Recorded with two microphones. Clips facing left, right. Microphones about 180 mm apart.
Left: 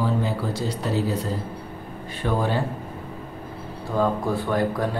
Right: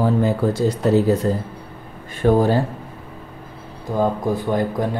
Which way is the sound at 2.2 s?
40° right (ahead or behind).